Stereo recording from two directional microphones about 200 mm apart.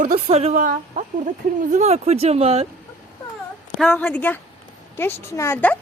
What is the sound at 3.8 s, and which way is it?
Speech, 5° left (ahead or behind).